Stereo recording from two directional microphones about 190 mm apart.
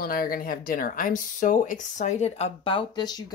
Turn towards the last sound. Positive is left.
turn(degrees=20)  # may be behind; listen again after turning